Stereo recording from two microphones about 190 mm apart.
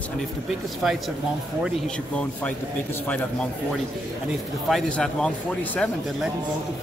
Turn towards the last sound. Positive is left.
turn(degrees=5)  # may be behind; listen again after turning